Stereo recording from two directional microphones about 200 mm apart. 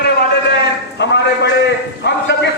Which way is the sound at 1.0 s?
60° left (ahead or behind).